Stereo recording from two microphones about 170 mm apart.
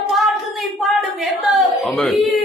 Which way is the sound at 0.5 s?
Centre (ahead or behind).